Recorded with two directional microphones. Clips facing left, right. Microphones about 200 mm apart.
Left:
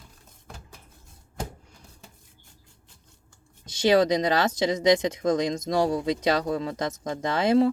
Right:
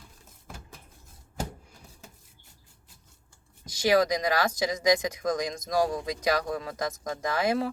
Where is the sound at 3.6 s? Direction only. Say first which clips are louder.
Left 3 dB; 25° left (ahead or behind).